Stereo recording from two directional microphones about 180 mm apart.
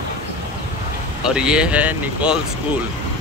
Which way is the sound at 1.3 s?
5° right (ahead or behind).